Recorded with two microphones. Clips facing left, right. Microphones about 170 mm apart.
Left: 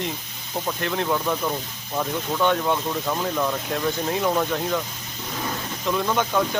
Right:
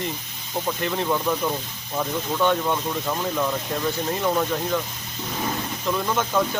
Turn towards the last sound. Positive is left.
turn(degrees=0)  # may be behind; listen again after turning